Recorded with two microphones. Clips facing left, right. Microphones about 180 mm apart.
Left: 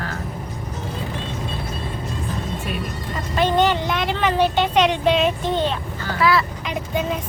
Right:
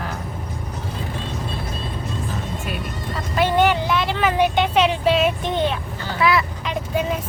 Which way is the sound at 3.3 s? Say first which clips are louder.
Even; 10° right (ahead or behind).